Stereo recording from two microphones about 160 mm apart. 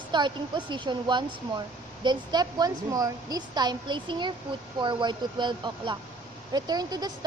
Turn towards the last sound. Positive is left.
turn(degrees=-25)  # may be behind; listen again after turning